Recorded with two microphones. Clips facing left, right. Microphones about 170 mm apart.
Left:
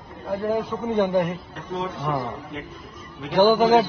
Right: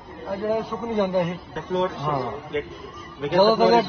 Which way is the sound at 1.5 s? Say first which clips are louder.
Right 9 dB; 70° right (ahead or behind).